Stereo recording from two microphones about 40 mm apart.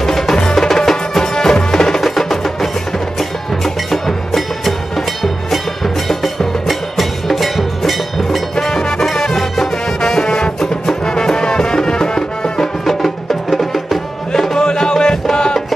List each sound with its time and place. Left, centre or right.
0.0 s music: centre
8.5 s music: centre
12.8 s music: centre